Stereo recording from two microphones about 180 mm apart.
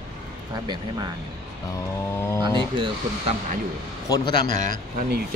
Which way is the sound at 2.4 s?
25° right (ahead or behind).